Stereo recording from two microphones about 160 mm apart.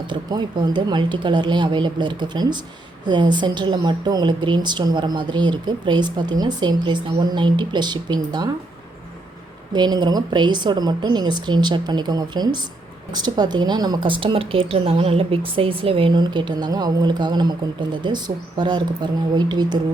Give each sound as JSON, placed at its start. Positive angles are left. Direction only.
{"t": 0.1, "sound": "speech", "side_deg": -30}
{"t": 9.7, "sound": "speech", "side_deg": -25}